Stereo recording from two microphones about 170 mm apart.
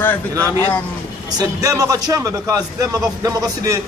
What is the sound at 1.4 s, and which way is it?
A man's voice, 20° right (ahead or behind).